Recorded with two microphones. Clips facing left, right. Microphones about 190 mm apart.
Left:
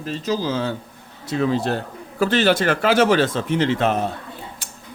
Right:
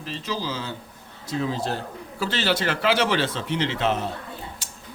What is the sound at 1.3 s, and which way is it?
A man's voice, 65° left (ahead or behind).